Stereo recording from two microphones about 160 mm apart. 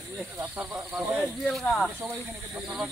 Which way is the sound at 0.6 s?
10° right (ahead or behind).